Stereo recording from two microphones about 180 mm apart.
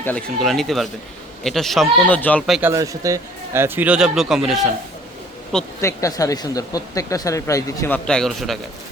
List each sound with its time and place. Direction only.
0.0 s speech: 5° left (ahead or behind)
2.5 s speech: 10° right (ahead or behind)
5.8 s speech: 20° left (ahead or behind); by 8.5 s centre (ahead or behind)